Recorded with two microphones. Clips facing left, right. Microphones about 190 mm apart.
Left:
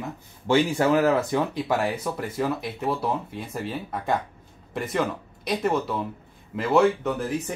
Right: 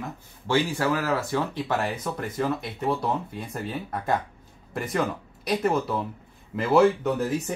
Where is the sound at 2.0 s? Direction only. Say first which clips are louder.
Left 1 dB; 5° left (ahead or behind).